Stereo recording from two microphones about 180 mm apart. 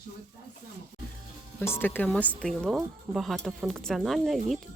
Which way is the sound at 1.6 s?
10° left (ahead or behind).